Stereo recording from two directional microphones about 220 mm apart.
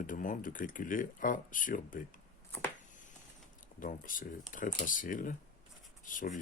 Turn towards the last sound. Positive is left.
turn(degrees=35)  # may be behind; listen again after turning